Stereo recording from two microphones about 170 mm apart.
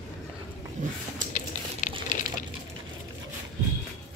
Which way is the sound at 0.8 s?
45° right (ahead or behind).